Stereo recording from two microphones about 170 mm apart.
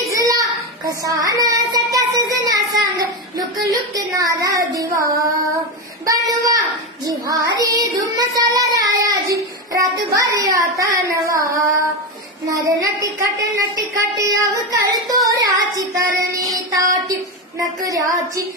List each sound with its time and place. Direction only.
0.0 s child singing: 20° right (ahead or behind)
6.0 s speech: 20° right (ahead or behind)
7.1 s child singing: 20° right (ahead or behind)
10.8 s carnatic music: 20° right (ahead or behind)
12.4 s child singing: 20° right (ahead or behind)
17.8 s child singing: 20° right (ahead or behind)